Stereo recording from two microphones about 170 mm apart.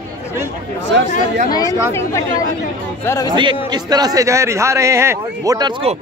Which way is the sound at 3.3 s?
25° right (ahead or behind).